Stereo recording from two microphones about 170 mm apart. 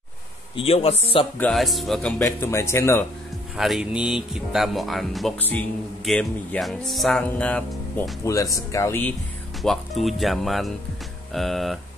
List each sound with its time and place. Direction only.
0.6 s a man's voice: 35° left (ahead or behind)
1.4 s speech: centre (ahead or behind)
2.2 s speech: 15° left (ahead or behind)
3.5 s speech: centre (ahead or behind); by 9.1 s 15° left (ahead or behind)
9.6 s speech: centre (ahead or behind)